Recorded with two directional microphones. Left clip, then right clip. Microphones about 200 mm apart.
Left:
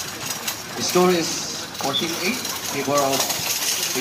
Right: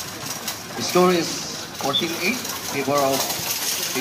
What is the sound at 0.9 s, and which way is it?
Speech, 10° left (ahead or behind).